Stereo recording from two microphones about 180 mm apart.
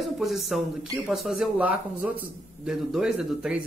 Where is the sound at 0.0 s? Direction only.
Centre (ahead or behind).